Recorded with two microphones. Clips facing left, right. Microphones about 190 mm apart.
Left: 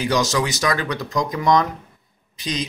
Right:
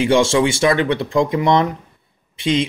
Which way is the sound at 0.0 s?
25° right (ahead or behind).